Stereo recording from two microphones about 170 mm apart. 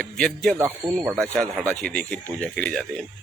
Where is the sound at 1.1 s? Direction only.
5° left (ahead or behind).